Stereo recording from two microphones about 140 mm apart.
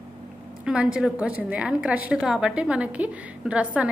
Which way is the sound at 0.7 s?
5° right (ahead or behind).